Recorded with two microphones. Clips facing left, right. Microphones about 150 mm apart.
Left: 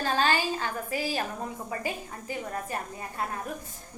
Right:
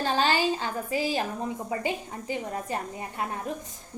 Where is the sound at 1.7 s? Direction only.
25° right (ahead or behind).